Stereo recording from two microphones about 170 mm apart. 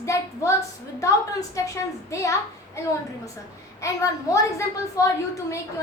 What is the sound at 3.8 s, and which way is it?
A woman's voice, 20° left (ahead or behind).